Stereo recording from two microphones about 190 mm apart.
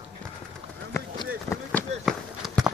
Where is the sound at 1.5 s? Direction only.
15° left (ahead or behind).